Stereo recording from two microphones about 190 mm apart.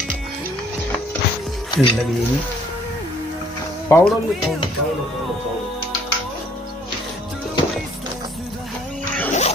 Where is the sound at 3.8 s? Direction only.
15° left (ahead or behind).